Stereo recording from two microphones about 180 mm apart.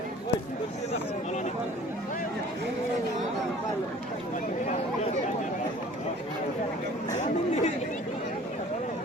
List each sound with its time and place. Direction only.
7.1 s chatter: 40° left (ahead or behind)